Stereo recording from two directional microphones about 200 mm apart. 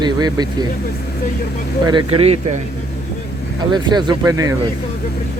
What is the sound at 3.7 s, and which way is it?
Speech, 20° right (ahead or behind).